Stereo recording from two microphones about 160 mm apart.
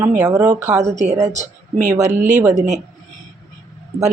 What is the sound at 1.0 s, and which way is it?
Speech, 45° right (ahead or behind).